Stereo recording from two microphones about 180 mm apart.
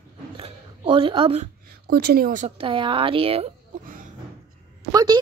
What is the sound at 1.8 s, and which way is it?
Speech, 60° right (ahead or behind).